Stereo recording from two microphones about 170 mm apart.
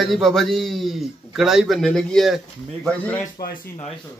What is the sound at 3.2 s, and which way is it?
Speech, 55° left (ahead or behind).